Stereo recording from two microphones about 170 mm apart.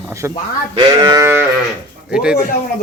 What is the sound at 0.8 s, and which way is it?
Speech, 25° right (ahead or behind).